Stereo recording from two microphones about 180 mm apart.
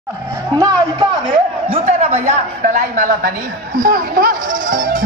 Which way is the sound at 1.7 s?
35° right (ahead or behind).